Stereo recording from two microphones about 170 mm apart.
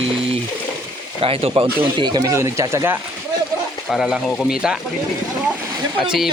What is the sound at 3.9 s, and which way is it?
Speech, centre (ahead or behind).